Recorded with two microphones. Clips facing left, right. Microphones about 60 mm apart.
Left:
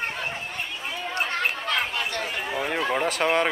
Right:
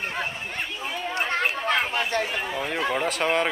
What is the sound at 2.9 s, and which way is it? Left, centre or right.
Speech, centre.